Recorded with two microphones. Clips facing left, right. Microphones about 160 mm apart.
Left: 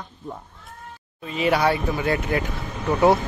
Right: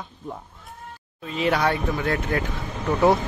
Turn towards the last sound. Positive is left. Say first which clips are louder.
# left 1 dB
turn(degrees=5)  # may be behind; listen again after turning